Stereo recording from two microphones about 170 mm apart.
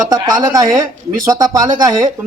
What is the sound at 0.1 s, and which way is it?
A man's voice, 25° right (ahead or behind).